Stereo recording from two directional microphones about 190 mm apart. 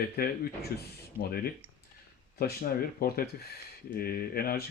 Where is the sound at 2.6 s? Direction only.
50° left (ahead or behind).